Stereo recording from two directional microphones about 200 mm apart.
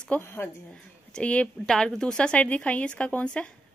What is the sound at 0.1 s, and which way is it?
A woman's voice, 10° left (ahead or behind).